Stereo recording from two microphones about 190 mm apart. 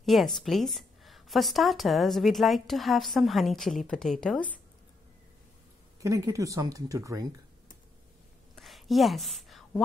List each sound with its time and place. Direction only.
0.0 s a woman's voice: centre (ahead or behind)
6.0 s speech: 15° right (ahead or behind)
8.5 s a sound: centre (ahead or behind)